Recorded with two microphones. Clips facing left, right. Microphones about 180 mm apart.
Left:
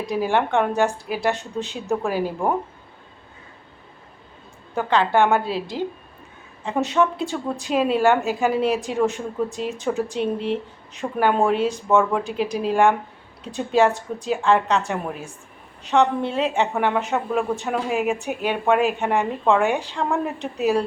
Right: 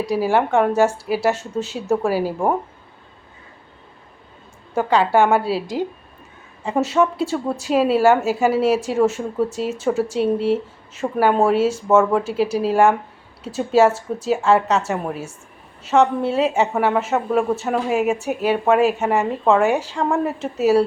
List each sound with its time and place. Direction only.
0.0 s a woman's voice: 5° right (ahead or behind)
4.7 s a woman's voice: 10° right (ahead or behind)
10.3 s speech: 40° right (ahead or behind)
10.9 s a woman's voice: 5° right (ahead or behind)